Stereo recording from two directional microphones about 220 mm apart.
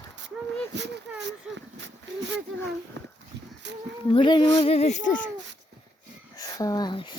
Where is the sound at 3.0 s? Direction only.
50° right (ahead or behind).